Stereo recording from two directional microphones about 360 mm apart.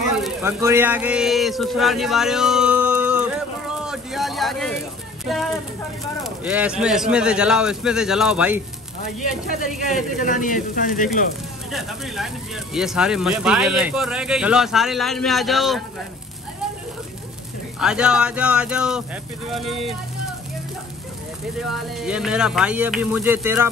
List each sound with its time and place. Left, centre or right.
0.2 s speech: centre
3.8 s a sound: centre
5.2 s speech: centre
9.8 s speech: left
12.7 s speech: centre
17.7 s speech: centre
21.5 s speech: centre